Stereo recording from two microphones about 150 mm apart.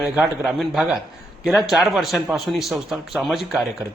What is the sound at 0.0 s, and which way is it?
A man's voice, 5° right (ahead or behind).